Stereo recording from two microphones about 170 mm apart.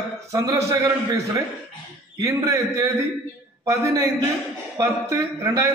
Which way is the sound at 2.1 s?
15° right (ahead or behind).